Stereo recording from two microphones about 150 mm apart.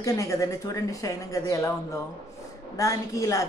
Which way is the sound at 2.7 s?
20° left (ahead or behind).